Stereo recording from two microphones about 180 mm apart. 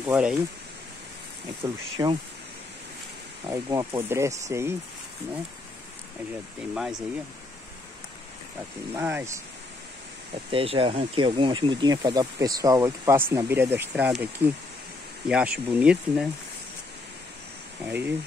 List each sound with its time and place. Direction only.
0.0 s speech: 5° right (ahead or behind)
1.6 s speech: 25° right (ahead or behind)
3.4 s speech: 15° right (ahead or behind)
6.7 s speech: 5° right (ahead or behind)
8.9 s speech: 10° right (ahead or behind)
10.3 s speech: 30° right (ahead or behind); by 16.3 s 5° right (ahead or behind)
17.8 s speech: 10° right (ahead or behind)